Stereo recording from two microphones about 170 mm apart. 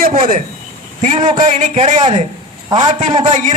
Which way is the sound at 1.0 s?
50° right (ahead or behind).